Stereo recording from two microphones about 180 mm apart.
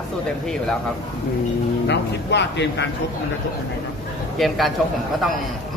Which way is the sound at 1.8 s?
75° left (ahead or behind).